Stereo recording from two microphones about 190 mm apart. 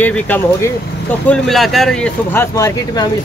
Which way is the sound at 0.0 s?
10° left (ahead or behind).